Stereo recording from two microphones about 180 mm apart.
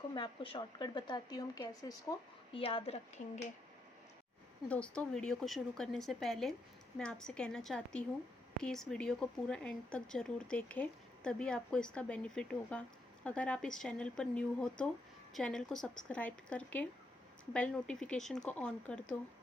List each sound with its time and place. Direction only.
0.1 s a woman's voice: 25° left (ahead or behind)
4.7 s speech: 5° left (ahead or behind)